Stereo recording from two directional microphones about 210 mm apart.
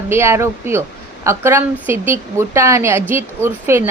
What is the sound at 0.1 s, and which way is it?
A woman's voice, 10° right (ahead or behind).